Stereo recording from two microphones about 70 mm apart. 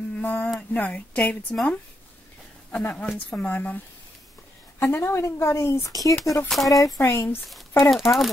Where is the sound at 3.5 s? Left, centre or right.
Left.